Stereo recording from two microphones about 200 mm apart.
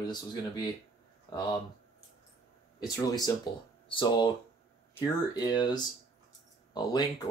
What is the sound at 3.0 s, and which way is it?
Speech, 20° left (ahead or behind).